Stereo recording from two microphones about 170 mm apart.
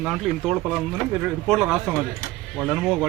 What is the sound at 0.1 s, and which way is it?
Speech, 5° right (ahead or behind).